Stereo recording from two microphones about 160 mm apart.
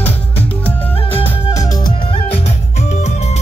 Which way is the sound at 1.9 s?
35° left (ahead or behind).